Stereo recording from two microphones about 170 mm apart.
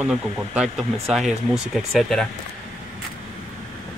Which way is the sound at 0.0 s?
Centre (ahead or behind).